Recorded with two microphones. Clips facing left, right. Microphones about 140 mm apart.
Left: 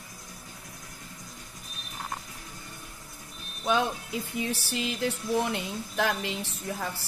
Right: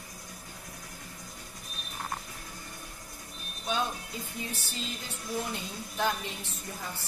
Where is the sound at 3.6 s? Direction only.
60° left (ahead or behind).